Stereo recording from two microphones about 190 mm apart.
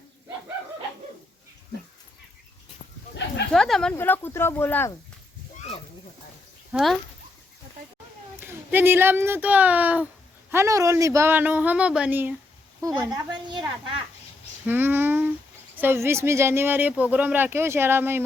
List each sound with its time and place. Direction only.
3.5 s speech: 5° left (ahead or behind)
6.7 s speech: 5° right (ahead or behind)
8.4 s speech: 10° right (ahead or behind)
12.8 s a woman's voice: 20° right (ahead or behind)
14.7 s speech: 10° right (ahead or behind)